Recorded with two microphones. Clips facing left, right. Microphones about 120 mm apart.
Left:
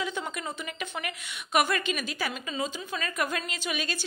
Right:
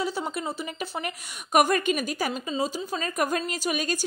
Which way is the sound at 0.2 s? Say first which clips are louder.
Right 4 dB; 35° right (ahead or behind).